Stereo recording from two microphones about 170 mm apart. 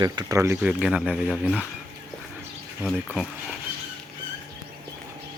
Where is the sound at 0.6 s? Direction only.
5° right (ahead or behind).